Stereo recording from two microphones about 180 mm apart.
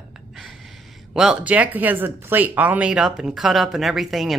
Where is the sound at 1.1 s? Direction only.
5° right (ahead or behind).